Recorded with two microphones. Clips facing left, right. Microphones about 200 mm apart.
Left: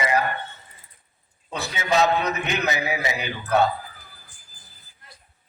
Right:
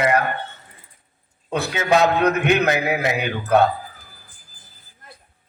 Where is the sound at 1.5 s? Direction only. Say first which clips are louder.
Right 5 dB; 55° right (ahead or behind).